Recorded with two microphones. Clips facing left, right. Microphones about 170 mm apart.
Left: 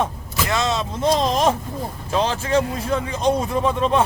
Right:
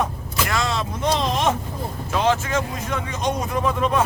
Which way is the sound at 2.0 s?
30° left (ahead or behind).